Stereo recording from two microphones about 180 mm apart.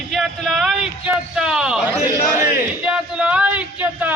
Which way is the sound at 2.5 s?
10° right (ahead or behind).